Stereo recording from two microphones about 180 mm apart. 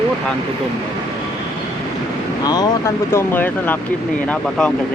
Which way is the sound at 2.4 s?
20° left (ahead or behind).